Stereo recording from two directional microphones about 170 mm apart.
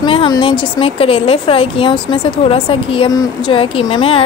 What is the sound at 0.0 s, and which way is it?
A woman's voice, 30° left (ahead or behind).